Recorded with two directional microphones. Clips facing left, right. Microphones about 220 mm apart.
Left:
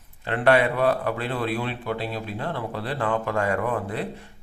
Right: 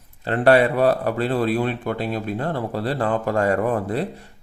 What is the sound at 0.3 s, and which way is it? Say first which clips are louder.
Speech: right 4 dB; 35° right (ahead or behind).